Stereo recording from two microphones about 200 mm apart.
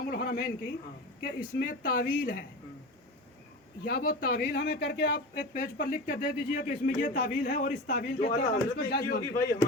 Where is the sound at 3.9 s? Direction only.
45° left (ahead or behind).